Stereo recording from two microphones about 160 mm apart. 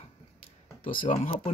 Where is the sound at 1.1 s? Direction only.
50° left (ahead or behind).